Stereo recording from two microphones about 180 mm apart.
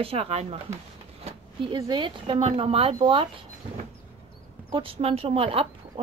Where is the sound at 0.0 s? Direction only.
35° right (ahead or behind).